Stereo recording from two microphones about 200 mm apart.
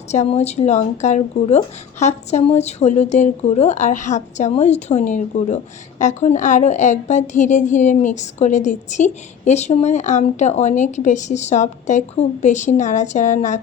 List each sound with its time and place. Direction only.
0.1 s a woman's voice: 35° left (ahead or behind)